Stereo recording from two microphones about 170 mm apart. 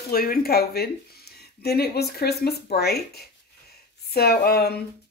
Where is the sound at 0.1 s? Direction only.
60° left (ahead or behind).